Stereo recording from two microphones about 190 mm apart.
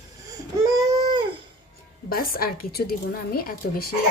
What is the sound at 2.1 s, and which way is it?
A woman's voice, 50° left (ahead or behind).